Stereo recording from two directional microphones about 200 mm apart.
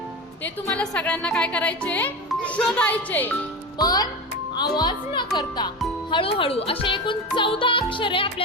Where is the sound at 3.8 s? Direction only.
20° left (ahead or behind).